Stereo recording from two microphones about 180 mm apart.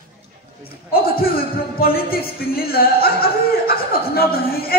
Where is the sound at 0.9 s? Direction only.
55° left (ahead or behind).